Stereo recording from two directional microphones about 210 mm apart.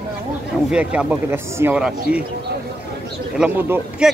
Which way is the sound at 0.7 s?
5° right (ahead or behind).